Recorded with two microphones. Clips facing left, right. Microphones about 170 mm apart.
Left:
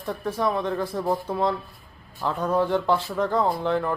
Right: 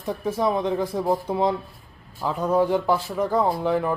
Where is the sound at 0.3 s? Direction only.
15° right (ahead or behind).